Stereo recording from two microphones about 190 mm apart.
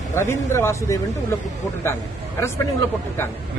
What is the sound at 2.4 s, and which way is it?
Speech, 15° left (ahead or behind).